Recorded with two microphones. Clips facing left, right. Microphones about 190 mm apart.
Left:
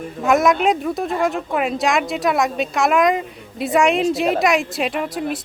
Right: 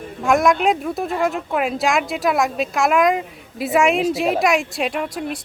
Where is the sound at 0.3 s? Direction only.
Centre (ahead or behind).